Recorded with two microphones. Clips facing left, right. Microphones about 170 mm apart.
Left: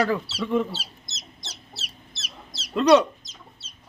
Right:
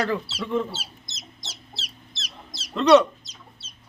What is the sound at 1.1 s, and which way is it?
Chicken, 10° right (ahead or behind).